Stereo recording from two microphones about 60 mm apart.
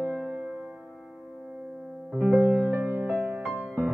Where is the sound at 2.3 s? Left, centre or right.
Right.